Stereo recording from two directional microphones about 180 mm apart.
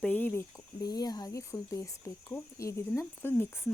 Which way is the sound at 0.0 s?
10° left (ahead or behind).